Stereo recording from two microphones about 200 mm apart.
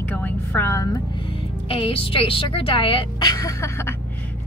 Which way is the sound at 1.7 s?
25° left (ahead or behind).